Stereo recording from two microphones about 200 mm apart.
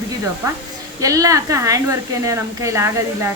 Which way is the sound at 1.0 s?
15° right (ahead or behind).